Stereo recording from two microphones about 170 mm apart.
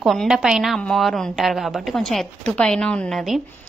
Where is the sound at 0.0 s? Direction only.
Centre (ahead or behind).